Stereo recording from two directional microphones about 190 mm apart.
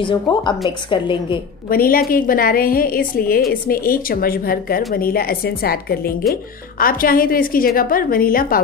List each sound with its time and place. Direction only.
0.0 s a woman's voice: 25° left (ahead or behind)
1.7 s a woman's voice: 50° left (ahead or behind)